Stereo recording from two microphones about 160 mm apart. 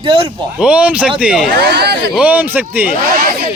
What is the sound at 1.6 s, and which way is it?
Speech, 90° right.